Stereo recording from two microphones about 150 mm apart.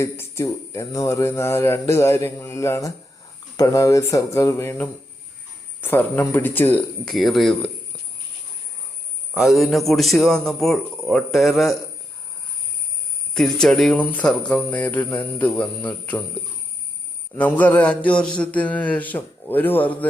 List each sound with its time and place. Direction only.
0.0 s speech: 20° left (ahead or behind); by 7.7 s centre (ahead or behind)
9.3 s a man's voice: centre (ahead or behind)
13.3 s speech: 5° left (ahead or behind)
17.3 s speech: 10° left (ahead or behind)